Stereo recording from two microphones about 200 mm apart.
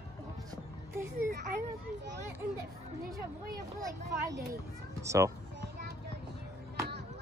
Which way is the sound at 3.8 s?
15° right (ahead or behind).